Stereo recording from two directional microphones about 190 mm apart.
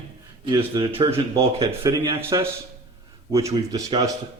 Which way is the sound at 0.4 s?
25° right (ahead or behind).